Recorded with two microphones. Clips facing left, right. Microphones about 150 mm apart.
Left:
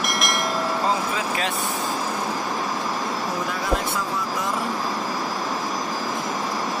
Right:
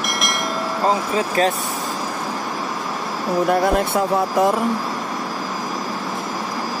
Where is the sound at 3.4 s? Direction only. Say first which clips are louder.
Right 10 dB; 55° right (ahead or behind).